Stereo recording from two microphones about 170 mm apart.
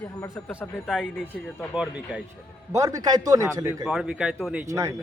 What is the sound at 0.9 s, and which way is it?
Speech, 5° left (ahead or behind).